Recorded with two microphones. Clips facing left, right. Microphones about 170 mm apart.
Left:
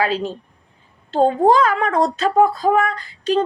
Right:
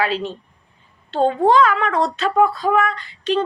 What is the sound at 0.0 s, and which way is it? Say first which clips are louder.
Speech: left 1 dB; 40° left (ahead or behind).